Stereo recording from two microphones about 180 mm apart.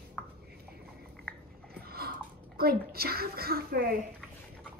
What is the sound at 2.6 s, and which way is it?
A woman's voice, 60° right (ahead or behind).